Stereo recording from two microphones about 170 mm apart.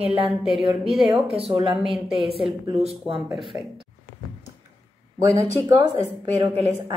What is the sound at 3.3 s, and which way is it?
Speech, centre (ahead or behind).